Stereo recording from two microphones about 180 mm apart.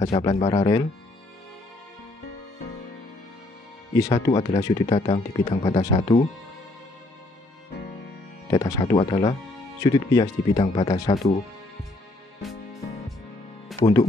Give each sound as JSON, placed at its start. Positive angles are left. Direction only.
{"t": 0.0, "sound": "speech", "side_deg": 30}
{"t": 3.9, "sound": "speech", "side_deg": 20}
{"t": 5.8, "sound": "speech", "side_deg": 20}
{"t": 8.5, "sound": "speech", "side_deg": 20}
{"t": 8.9, "sound": "speech", "side_deg": 30}
{"t": 9.8, "sound": "speech", "side_deg": 20}
{"t": 10.5, "sound": "speech", "side_deg": 35}
{"t": 10.9, "sound": "speech", "side_deg": 20}
{"t": 13.7, "sound": "music", "side_deg": 0}